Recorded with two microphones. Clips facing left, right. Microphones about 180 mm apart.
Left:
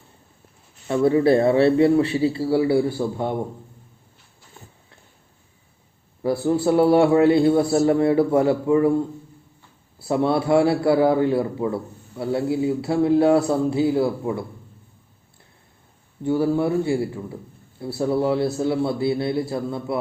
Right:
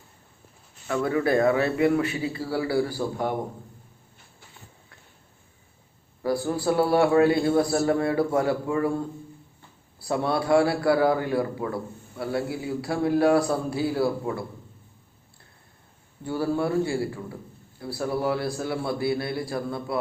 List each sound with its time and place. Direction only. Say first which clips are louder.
0.9 s a man's voice: left 7 dB; 30° left (ahead or behind)
6.2 s a man's voice: left 5 dB; 25° left (ahead or behind)
10.0 s a man's voice: left 5 dB; 25° left (ahead or behind)
16.2 s a man's voice: left 5 dB; 20° left (ahead or behind)